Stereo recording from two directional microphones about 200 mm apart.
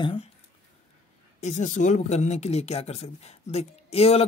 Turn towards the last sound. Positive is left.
turn(degrees=30)  # may be behind; listen again after turning